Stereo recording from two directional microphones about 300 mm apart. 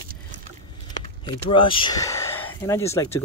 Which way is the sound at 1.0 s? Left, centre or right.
Right.